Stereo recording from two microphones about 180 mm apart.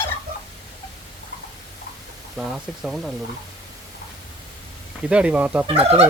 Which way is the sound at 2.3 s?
Centre (ahead or behind).